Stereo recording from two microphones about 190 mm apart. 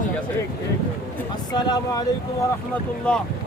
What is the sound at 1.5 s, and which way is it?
Speech, 20° left (ahead or behind).